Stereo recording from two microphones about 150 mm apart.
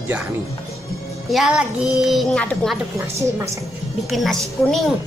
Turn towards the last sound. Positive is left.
turn(degrees=0)  # may be behind; listen again after turning